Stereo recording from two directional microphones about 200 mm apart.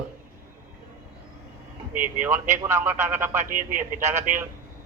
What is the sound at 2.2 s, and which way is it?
Speech, 10° right (ahead or behind).